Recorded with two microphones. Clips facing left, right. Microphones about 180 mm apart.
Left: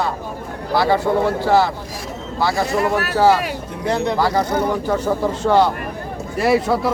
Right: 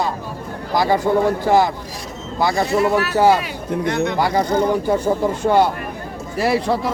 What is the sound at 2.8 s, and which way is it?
Speech, 50° left (ahead or behind).